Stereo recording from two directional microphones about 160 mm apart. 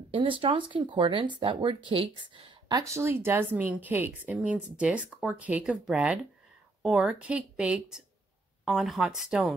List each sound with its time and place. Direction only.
0.1 s speech: 35° right (ahead or behind)
2.7 s a woman's voice: 20° right (ahead or behind); by 9.5 s 5° right (ahead or behind)